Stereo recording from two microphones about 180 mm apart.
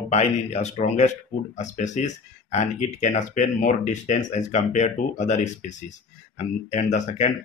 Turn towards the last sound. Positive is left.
turn(degrees=40)  # may be behind; listen again after turning